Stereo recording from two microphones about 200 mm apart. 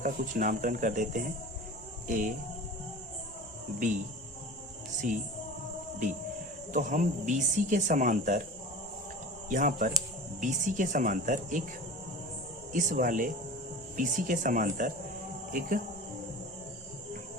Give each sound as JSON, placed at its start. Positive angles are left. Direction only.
{"t": 0.0, "sound": "speech", "side_deg": -40}
{"t": 5.0, "sound": "speech", "side_deg": -40}
{"t": 6.7, "sound": "speech", "side_deg": -40}
{"t": 9.5, "sound": "speech", "side_deg": -40}
{"t": 12.7, "sound": "speech", "side_deg": -40}